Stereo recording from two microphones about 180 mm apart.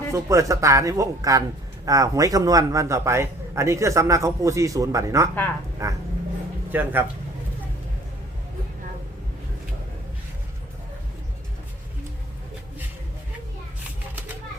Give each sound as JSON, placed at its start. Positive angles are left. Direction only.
{"t": 0.1, "sound": "speech", "side_deg": -15}